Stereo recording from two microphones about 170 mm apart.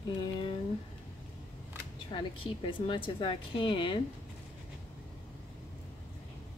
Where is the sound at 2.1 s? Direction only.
30° left (ahead or behind).